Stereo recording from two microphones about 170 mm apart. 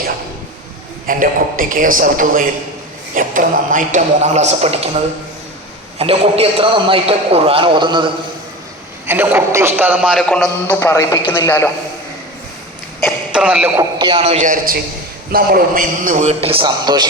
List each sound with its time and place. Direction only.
1.0 s a man's voice: 55° right (ahead or behind); by 4.8 s 40° right (ahead or behind)
6.0 s a man's voice: 35° right (ahead or behind)
9.0 s a man's voice: 10° right (ahead or behind)
10.2 s a man's voice: 5° left (ahead or behind)
10.7 s speech: 15° left (ahead or behind)
13.0 s speech: 5° right (ahead or behind)
14.0 s a man's voice: 35° right (ahead or behind)
14.4 s a man's voice: 50° right (ahead or behind); by 17.1 s 25° right (ahead or behind)